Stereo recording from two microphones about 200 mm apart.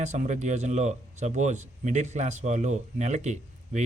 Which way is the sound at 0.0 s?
35° right (ahead or behind).